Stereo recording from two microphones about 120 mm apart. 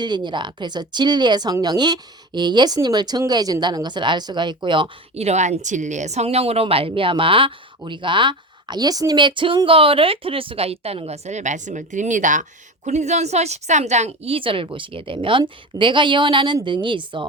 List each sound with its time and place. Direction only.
0.0 s speech: 40° right (ahead or behind)
5.1 s a woman's voice: 65° right (ahead or behind); by 17.2 s 45° right (ahead or behind)